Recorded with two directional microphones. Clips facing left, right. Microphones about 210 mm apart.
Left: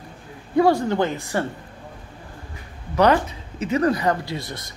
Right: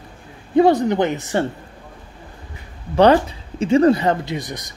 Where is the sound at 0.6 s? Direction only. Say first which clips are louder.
Right 4 dB; 20° right (ahead or behind).